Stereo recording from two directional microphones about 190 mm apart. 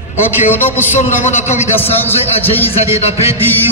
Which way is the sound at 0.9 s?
35° left (ahead or behind).